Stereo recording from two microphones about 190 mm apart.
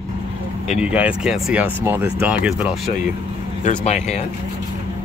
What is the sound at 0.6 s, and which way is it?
Speech, 5° right (ahead or behind).